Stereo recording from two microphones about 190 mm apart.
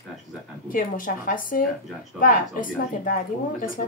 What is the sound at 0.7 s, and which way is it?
Speech, 45° left (ahead or behind).